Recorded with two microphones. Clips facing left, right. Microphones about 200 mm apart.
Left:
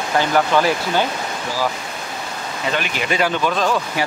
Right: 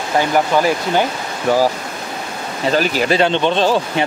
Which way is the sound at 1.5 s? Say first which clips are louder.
Right 12 dB; 65° right (ahead or behind).